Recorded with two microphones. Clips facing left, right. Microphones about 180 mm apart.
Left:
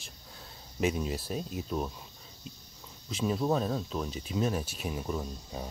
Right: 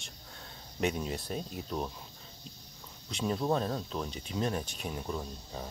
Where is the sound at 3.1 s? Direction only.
Centre (ahead or behind).